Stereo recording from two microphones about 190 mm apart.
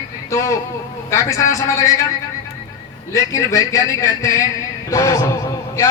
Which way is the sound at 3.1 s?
15° left (ahead or behind).